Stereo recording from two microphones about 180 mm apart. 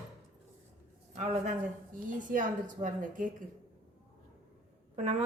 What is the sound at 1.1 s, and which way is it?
A man's voice, 40° right (ahead or behind).